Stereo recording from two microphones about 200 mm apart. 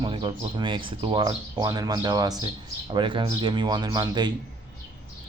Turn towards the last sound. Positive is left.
turn(degrees=-20)  # may be behind; listen again after turning